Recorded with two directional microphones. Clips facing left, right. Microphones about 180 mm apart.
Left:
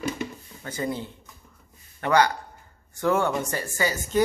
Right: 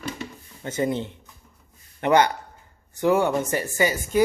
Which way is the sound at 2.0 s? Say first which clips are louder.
Right 2 dB; 25° right (ahead or behind).